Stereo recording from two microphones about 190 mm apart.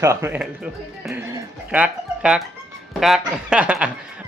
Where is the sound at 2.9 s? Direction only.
Centre (ahead or behind).